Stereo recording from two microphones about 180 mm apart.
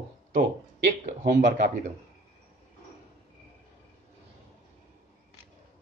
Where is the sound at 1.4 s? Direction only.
70° right (ahead or behind).